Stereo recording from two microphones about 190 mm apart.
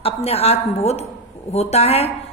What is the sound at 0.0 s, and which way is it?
A woman's voice, 30° left (ahead or behind).